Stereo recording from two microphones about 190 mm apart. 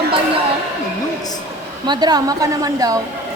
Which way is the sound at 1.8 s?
20° right (ahead or behind).